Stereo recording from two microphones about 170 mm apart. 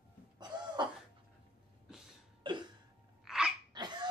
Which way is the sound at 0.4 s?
25° right (ahead or behind).